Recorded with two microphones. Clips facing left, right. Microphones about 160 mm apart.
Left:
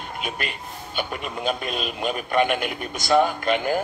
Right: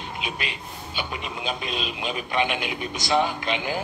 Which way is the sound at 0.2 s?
50° left (ahead or behind).